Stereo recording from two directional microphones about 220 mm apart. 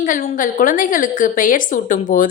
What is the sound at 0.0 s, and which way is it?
A woman's voice, 35° left (ahead or behind).